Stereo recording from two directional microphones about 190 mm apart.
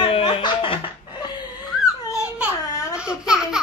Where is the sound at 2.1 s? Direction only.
5° right (ahead or behind).